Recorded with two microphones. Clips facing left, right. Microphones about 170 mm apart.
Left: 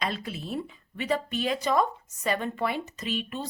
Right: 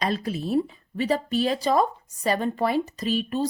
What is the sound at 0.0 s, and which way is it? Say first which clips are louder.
A woman's voice: right 6 dB; 40° right (ahead or behind).